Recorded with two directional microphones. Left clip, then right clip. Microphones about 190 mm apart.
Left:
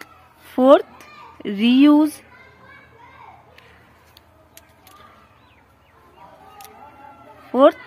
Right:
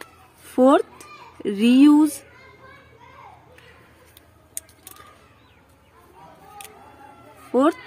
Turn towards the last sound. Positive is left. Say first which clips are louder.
# left 6 dB
turn(degrees=-10)  # may be behind; listen again after turning